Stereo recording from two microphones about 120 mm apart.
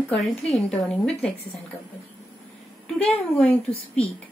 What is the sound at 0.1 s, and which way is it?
A woman's voice, 5° left (ahead or behind).